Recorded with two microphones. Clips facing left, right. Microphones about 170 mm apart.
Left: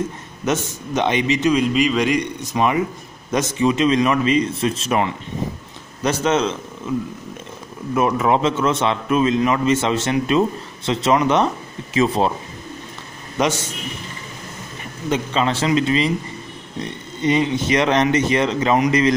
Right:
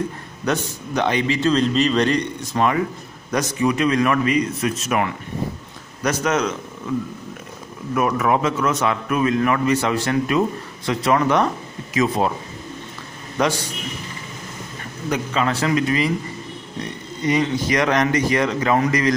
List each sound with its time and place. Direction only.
0.5 s a man's voice: 20° left (ahead or behind)
7.9 s a man's voice: 25° left (ahead or behind)
13.4 s a man's voice: 20° left (ahead or behind)
14.8 s a man's voice: 25° left (ahead or behind)